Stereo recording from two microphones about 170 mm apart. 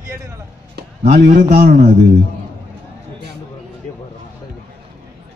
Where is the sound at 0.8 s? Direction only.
70° right (ahead or behind).